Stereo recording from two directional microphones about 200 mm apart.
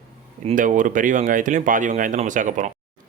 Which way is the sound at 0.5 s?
40° right (ahead or behind).